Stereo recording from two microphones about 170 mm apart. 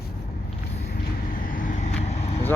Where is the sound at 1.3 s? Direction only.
50° left (ahead or behind).